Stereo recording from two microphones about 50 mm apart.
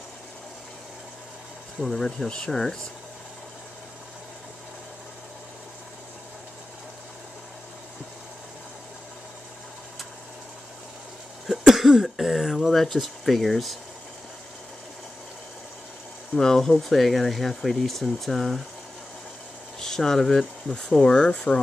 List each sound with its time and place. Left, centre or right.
1.8 s speech: centre
11.4 s cough: centre
12.8 s speech: centre
16.3 s speech: centre
19.8 s speech: centre
20.7 s speech: centre